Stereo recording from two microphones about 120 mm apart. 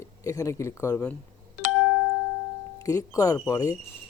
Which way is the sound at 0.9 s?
10° left (ahead or behind).